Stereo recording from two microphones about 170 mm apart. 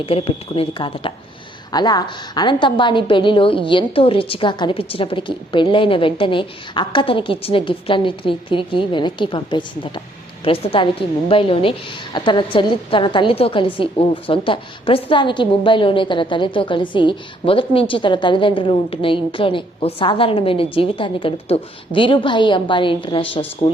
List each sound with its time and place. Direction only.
0.0 s a woman's voice: 35° left (ahead or behind)